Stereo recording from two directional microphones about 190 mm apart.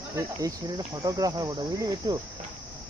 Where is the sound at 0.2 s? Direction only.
20° right (ahead or behind).